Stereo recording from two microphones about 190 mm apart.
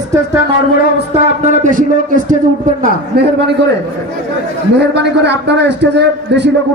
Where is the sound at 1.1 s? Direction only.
35° right (ahead or behind).